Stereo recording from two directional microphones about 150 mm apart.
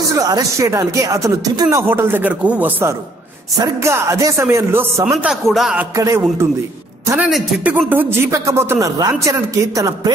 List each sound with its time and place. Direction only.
0.1 s speech: 25° right (ahead or behind)
5.2 s speech: centre (ahead or behind)
5.8 s a man's voice: 15° right (ahead or behind)
7.2 s speech: centre (ahead or behind); by 10.1 s 25° right (ahead or behind)